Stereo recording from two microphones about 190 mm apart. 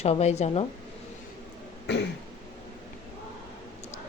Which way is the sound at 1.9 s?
65° left (ahead or behind).